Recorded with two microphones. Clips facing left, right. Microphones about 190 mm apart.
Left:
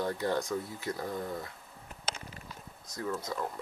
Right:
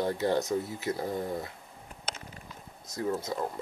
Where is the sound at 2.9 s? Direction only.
25° right (ahead or behind).